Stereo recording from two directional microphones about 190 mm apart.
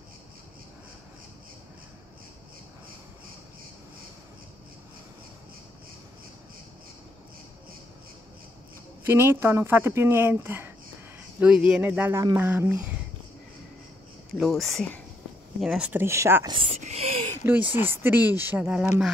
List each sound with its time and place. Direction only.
9.0 s speech: 10° right (ahead or behind)
14.3 s speech: centre (ahead or behind)
16.5 s a sound: 30° right (ahead or behind)
17.4 s speech: 10° right (ahead or behind)